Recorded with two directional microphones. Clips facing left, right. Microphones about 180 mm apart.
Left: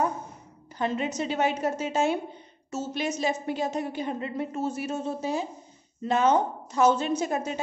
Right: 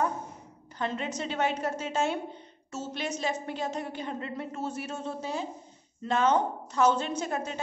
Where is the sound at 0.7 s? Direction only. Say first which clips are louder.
Left 4 dB; 10° left (ahead or behind).